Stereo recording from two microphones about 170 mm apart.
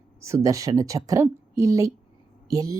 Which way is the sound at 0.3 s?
20° right (ahead or behind).